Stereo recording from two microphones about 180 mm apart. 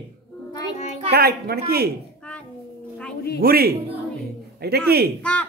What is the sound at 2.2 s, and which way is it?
Child singing, 10° left (ahead or behind).